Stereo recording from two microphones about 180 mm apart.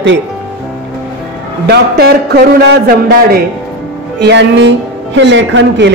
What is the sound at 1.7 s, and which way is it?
Speech, 65° right (ahead or behind).